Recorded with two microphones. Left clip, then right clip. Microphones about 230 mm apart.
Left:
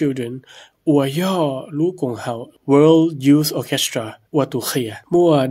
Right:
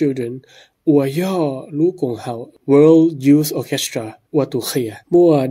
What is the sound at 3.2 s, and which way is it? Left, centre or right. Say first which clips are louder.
Speech: right 1 dB; centre.